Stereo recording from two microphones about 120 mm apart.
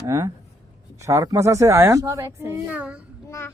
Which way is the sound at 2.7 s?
10° right (ahead or behind).